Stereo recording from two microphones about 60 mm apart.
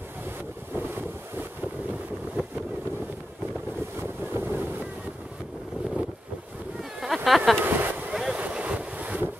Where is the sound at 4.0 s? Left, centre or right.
Right.